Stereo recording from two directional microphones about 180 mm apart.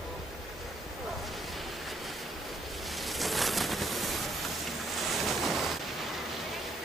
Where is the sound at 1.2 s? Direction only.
Centre (ahead or behind).